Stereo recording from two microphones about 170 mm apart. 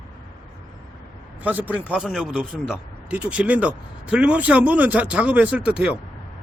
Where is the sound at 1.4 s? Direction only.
10° right (ahead or behind).